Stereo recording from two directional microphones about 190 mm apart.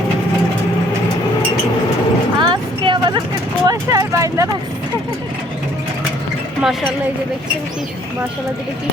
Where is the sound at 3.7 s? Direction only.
15° right (ahead or behind).